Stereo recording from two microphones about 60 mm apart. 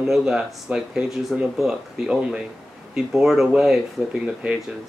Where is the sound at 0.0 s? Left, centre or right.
Centre.